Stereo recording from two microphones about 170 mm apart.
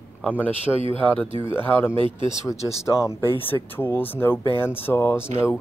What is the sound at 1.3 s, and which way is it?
Speech, 30° right (ahead or behind).